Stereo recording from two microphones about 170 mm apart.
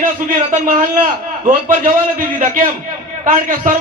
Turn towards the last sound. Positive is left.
turn(degrees=-50)  # may be behind; listen again after turning